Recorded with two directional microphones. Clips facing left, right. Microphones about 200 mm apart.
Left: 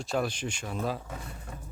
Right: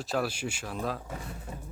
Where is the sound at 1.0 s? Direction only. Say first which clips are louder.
Right 2 dB; 5° right (ahead or behind).